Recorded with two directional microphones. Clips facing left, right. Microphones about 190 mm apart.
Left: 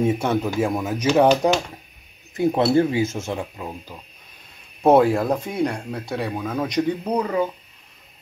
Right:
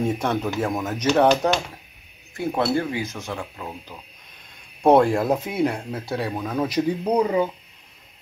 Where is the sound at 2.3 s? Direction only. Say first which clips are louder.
Left 5 dB; 20° left (ahead or behind).